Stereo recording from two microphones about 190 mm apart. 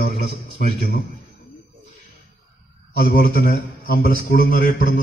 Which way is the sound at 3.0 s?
50° left (ahead or behind).